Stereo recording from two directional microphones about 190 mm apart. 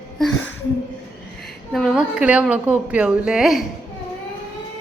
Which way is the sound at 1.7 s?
Centre (ahead or behind).